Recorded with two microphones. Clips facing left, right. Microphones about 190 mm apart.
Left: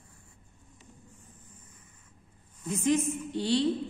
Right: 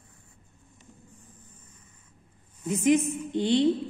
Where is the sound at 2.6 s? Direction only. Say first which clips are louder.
Right 4 dB; 15° right (ahead or behind).